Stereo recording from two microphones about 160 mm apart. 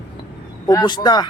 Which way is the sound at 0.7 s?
25° left (ahead or behind).